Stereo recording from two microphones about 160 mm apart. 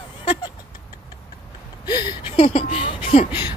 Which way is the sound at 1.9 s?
25° left (ahead or behind).